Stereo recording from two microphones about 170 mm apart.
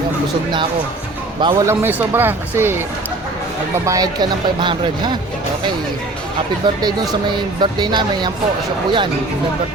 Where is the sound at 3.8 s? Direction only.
20° right (ahead or behind).